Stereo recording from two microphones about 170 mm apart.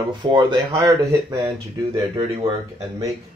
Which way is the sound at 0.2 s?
30° right (ahead or behind).